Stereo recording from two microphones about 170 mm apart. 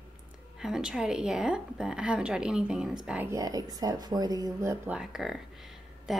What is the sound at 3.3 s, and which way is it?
Speech, 20° right (ahead or behind).